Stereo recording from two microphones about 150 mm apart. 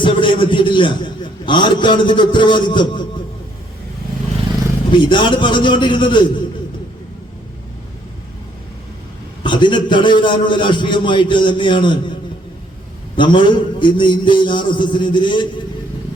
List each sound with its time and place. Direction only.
0.0 s a man's voice: 35° left (ahead or behind)
4.9 s a man's voice: 30° left (ahead or behind)
9.4 s a man's voice: 30° left (ahead or behind)
13.1 s a man's voice: 35° left (ahead or behind)